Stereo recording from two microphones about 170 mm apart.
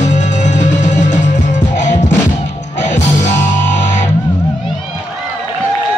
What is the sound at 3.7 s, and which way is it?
Music, 45° left (ahead or behind).